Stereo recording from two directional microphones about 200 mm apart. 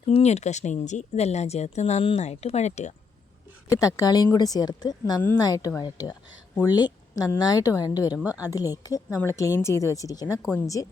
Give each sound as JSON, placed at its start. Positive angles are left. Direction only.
{"t": 0.1, "sound": "speech", "side_deg": 35}
{"t": 3.7, "sound": "a woman's voice", "side_deg": 15}
{"t": 8.1, "sound": "speech", "side_deg": -5}
{"t": 8.4, "sound": "a woman's voice", "side_deg": 20}